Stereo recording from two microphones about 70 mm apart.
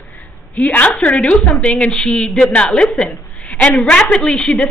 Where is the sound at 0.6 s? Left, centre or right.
Left.